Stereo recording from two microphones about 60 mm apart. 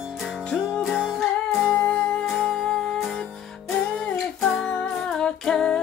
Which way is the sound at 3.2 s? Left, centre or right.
Centre.